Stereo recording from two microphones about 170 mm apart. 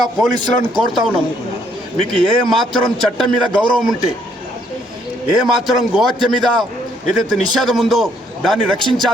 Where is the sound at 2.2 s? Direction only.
Centre (ahead or behind).